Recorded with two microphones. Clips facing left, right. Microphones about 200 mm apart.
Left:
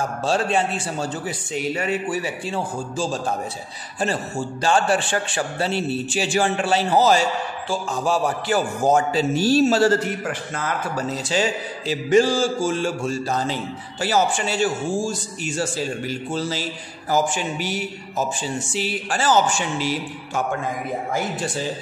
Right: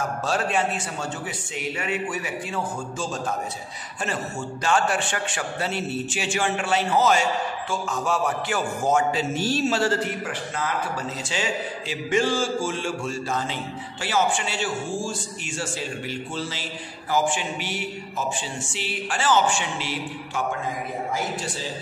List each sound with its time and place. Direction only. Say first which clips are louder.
0.2 s a man's voice: left 4 dB; 30° left (ahead or behind)